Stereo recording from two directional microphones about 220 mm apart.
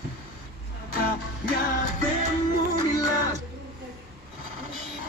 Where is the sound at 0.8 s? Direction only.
40° left (ahead or behind).